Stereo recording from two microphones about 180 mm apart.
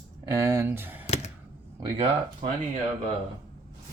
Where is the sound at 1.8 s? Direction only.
25° right (ahead or behind).